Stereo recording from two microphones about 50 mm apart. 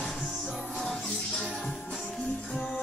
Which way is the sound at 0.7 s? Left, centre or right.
Centre.